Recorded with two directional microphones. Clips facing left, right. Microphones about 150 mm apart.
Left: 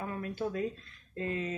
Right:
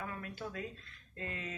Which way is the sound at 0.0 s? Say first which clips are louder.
Left 7 dB; 30° left (ahead or behind).